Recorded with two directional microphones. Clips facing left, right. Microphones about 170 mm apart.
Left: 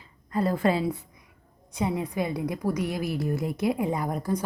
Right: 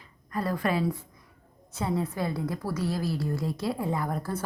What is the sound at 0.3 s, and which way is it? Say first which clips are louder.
A woman's voice: left 4 dB; 25° left (ahead or behind).